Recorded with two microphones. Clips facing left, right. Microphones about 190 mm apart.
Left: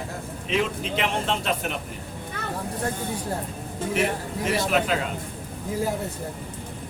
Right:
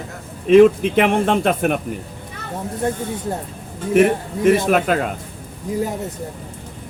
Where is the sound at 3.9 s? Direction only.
55° right (ahead or behind).